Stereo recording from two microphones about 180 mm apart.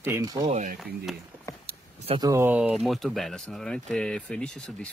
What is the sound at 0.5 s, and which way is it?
Speech, 40° right (ahead or behind).